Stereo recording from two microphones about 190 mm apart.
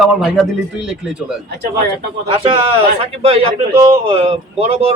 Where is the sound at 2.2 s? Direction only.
30° right (ahead or behind).